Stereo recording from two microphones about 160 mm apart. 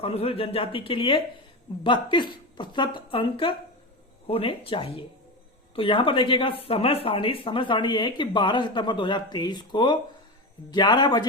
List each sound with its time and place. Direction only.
0.0 s speech: 40° left (ahead or behind)